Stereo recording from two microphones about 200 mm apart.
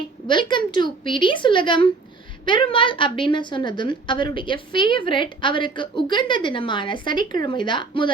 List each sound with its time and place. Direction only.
0.3 s a woman's voice: 25° left (ahead or behind)